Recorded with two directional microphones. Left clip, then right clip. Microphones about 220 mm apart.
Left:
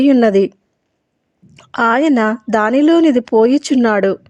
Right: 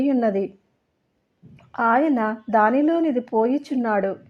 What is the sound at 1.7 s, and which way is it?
Speech, 40° left (ahead or behind).